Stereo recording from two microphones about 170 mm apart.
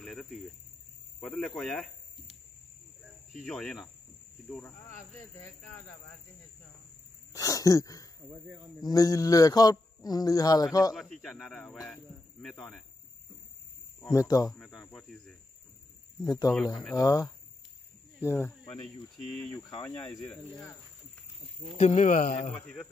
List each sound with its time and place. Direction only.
0.0 s speech: centre (ahead or behind)
3.4 s speech: centre (ahead or behind)
4.5 s cricket: 5° left (ahead or behind)
7.3 s a man's voice: 20° left (ahead or behind)
8.3 s speech: 15° right (ahead or behind)
8.8 s a man's voice: 20° left (ahead or behind)
11.0 s speech: centre (ahead or behind)
14.0 s a man's voice: 20° left (ahead or behind)
14.8 s speech: 5° left (ahead or behind)
16.3 s a man's voice: 20° left (ahead or behind)
18.2 s cricket: 15° left (ahead or behind)
19.2 s speech: centre (ahead or behind)
21.7 s speech: 45° left (ahead or behind)